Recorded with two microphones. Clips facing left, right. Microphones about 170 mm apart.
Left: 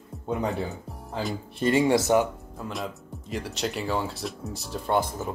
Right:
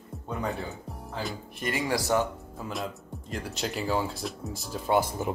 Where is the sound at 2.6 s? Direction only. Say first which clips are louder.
Left 1 dB; centre (ahead or behind).